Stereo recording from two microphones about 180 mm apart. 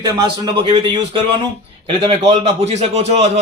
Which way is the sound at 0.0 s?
20° right (ahead or behind).